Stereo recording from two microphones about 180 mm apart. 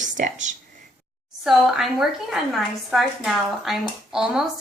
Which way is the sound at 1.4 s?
Centre (ahead or behind).